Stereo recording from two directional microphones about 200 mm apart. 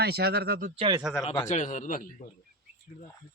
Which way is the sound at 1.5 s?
40° left (ahead or behind).